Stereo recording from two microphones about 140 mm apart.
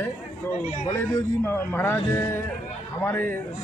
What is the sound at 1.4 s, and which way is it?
A man's voice, 15° left (ahead or behind).